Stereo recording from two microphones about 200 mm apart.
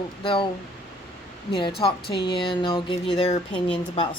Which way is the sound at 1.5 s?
25° left (ahead or behind).